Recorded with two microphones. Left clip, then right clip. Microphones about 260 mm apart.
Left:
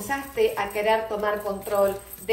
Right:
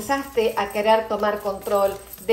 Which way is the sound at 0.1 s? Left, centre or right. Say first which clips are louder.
Right 3 dB; right.